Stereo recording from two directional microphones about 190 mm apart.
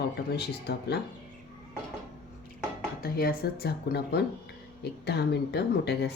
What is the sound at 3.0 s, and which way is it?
Speech, 50° left (ahead or behind).